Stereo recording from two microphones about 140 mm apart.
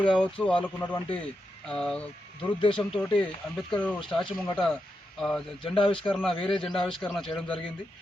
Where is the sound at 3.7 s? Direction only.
10° left (ahead or behind).